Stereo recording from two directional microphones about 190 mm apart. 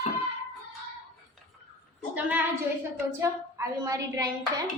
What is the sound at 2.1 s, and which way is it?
A woman's voice, 10° right (ahead or behind).